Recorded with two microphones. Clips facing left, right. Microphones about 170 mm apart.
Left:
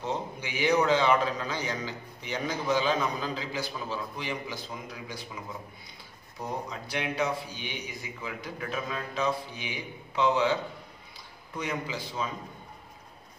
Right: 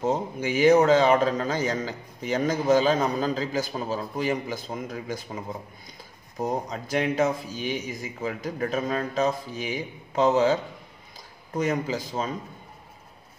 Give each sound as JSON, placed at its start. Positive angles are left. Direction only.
{"t": 0.0, "sound": "a man's voice", "side_deg": -45}